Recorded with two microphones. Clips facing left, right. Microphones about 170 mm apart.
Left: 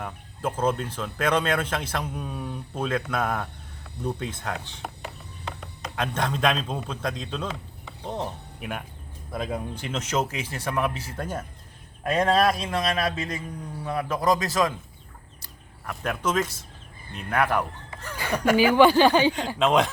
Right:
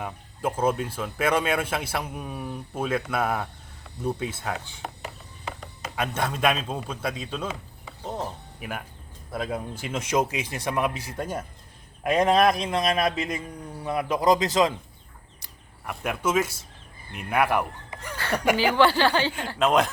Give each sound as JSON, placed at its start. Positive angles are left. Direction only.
{"t": 0.0, "sound": "speech", "side_deg": -10}
{"t": 15.9, "sound": "speech", "side_deg": -10}
{"t": 18.2, "sound": "speech", "side_deg": 15}
{"t": 19.5, "sound": "speech", "side_deg": 0}